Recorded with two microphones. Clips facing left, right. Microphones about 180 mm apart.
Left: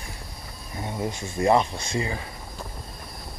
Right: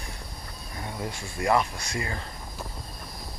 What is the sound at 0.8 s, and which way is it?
Speech, 20° left (ahead or behind).